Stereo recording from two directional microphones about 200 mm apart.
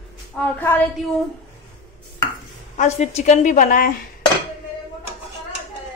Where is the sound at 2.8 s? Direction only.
35° left (ahead or behind).